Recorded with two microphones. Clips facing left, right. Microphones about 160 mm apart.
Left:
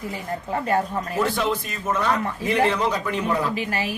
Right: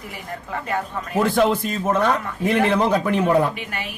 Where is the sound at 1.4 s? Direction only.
55° right (ahead or behind).